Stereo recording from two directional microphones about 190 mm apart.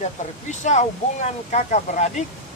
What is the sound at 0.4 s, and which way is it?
Speech, 40° left (ahead or behind).